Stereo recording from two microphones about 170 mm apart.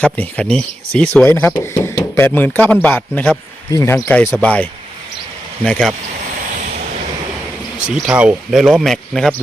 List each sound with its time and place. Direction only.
0.0 s speech: 5° left (ahead or behind)
6.1 s a sound: 50° right (ahead or behind)
7.8 s speech: 5° right (ahead or behind)